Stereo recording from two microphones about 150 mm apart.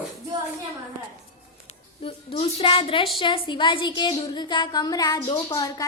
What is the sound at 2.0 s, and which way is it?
A woman's voice, 40° left (ahead or behind).